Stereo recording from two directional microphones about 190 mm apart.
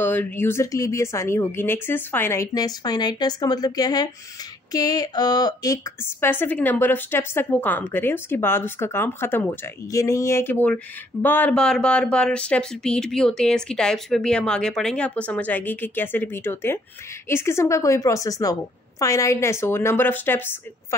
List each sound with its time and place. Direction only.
0.0 s a woman's voice: 10° left (ahead or behind)